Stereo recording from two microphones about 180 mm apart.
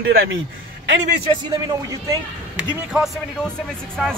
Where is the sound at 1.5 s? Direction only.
20° right (ahead or behind).